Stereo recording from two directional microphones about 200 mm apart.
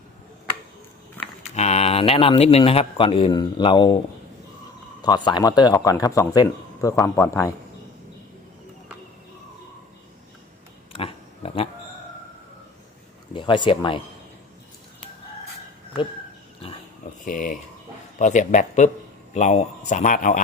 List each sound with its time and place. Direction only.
1.2 s a sound: 10° left (ahead or behind)
1.5 s a man's voice: 35° left (ahead or behind)
5.0 s speech: 20° left (ahead or behind)
10.9 s a sound: 30° left (ahead or behind)
13.3 s speech: 25° left (ahead or behind)
17.2 s a man's voice: 45° left (ahead or behind)